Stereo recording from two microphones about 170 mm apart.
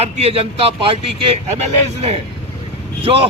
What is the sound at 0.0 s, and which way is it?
Speech, 35° right (ahead or behind).